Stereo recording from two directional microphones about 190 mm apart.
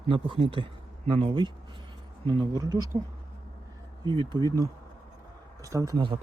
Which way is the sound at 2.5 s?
20° right (ahead or behind).